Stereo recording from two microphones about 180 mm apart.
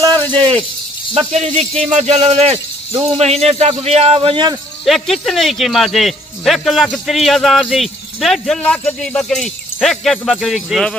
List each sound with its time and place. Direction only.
0.0 s a sound: 25° right (ahead or behind)
1.1 s a man's voice: 35° right (ahead or behind)
4.8 s speech: centre (ahead or behind)